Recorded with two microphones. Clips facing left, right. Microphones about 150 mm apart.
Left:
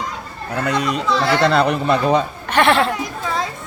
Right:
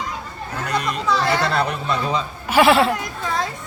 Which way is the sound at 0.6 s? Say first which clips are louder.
Left 3 dB; 90° left.